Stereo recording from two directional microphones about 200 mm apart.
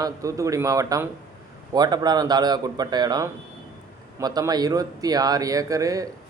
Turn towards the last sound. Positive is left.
turn(degrees=-15)  # may be behind; listen again after turning